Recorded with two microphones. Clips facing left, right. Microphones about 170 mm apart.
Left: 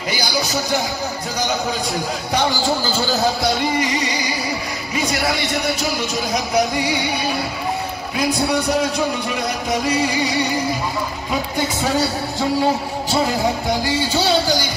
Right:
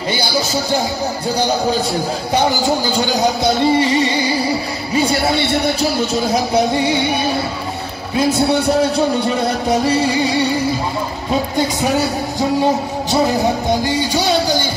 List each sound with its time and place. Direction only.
2.3 s a man's voice: 20° right (ahead or behind)
8.2 s a man's voice: 30° right (ahead or behind)
13.7 s music: 15° right (ahead or behind)